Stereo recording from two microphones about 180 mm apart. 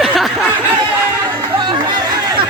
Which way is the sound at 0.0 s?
5° right (ahead or behind).